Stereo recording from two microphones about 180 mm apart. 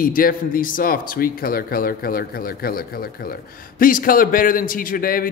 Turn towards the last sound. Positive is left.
turn(degrees=55)  # may be behind; listen again after turning